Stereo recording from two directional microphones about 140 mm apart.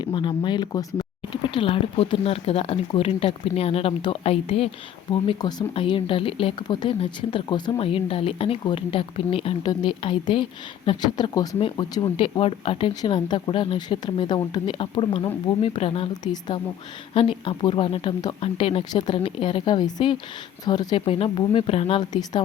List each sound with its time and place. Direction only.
0.0 s speech: 35° left (ahead or behind)
5.1 s speech: 30° left (ahead or behind)
5.7 s speech: 40° left (ahead or behind)
16.2 s speech: 30° left (ahead or behind)
17.2 s speech: 40° left (ahead or behind)
21.0 s speech: 40° left (ahead or behind)
22.1 s speech: 30° left (ahead or behind)